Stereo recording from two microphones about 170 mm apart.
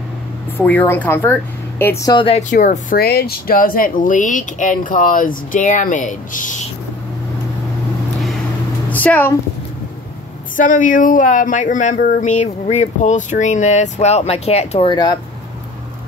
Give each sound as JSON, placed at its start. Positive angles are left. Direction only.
{"t": 0.6, "sound": "speech", "side_deg": 10}
{"t": 2.2, "sound": "speech", "side_deg": 45}
{"t": 8.9, "sound": "speech", "side_deg": 10}
{"t": 10.5, "sound": "speech", "side_deg": 50}